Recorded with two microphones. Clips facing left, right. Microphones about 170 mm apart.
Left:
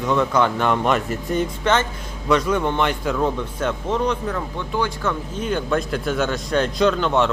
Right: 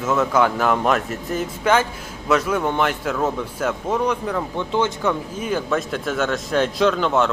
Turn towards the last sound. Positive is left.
turn(degrees=0)  # may be behind; listen again after turning